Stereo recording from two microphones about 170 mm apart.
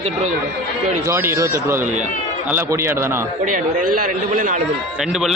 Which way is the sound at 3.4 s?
50° right (ahead or behind).